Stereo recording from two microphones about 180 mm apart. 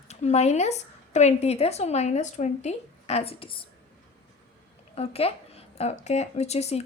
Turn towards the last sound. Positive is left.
turn(degrees=35)  # may be behind; listen again after turning